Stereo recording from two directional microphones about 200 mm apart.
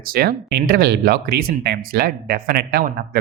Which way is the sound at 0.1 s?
50° right (ahead or behind).